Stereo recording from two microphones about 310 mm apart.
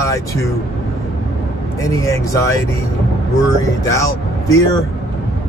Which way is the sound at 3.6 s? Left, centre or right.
Centre.